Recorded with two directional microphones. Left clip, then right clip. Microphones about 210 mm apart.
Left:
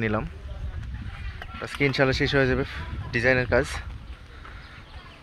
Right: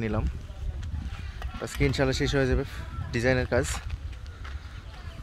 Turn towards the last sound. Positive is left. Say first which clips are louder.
# left 4 dB
turn(degrees=-10)  # may be behind; listen again after turning